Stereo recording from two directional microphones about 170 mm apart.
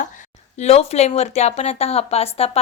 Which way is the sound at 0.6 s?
40° left (ahead or behind).